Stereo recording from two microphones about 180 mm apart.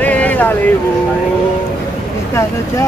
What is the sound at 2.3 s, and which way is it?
Speech, 15° left (ahead or behind).